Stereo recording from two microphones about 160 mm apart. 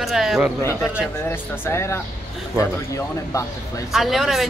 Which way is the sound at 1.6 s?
15° left (ahead or behind).